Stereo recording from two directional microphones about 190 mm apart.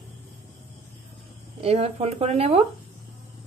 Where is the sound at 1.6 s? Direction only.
30° right (ahead or behind).